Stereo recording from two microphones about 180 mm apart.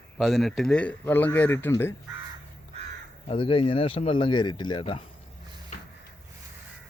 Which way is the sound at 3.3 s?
30° left (ahead or behind).